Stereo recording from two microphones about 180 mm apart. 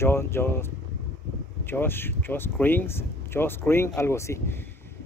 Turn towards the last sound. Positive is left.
turn(degrees=15)  # may be behind; listen again after turning